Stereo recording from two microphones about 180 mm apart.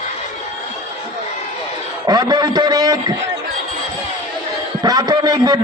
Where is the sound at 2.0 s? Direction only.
20° right (ahead or behind).